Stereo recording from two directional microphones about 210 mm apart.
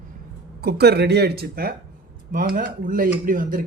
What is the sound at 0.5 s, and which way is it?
Speech, 50° right (ahead or behind).